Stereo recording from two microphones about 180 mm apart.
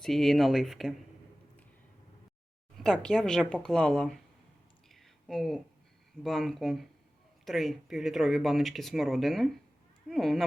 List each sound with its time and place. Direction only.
0.0 s speech: centre (ahead or behind)
2.7 s speech: centre (ahead or behind)
4.9 s a sound: centre (ahead or behind)
6.2 s speech: centre (ahead or behind)